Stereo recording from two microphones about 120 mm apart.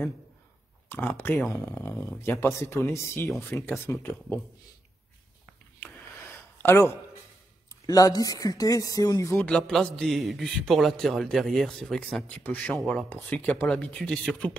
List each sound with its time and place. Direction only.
0.8 s speech: 15° left (ahead or behind)
5.8 s a sound: 20° left (ahead or behind)
7.8 s speech: 30° left (ahead or behind)
9.5 s a man's voice: 5° left (ahead or behind)